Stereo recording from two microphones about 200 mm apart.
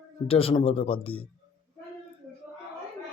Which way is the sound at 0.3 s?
30° left (ahead or behind).